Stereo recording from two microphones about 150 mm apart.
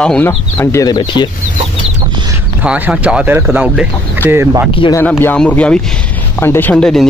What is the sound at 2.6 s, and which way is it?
Speech, 10° right (ahead or behind).